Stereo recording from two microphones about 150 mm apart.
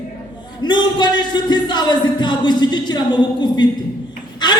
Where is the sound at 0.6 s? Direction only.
30° left (ahead or behind).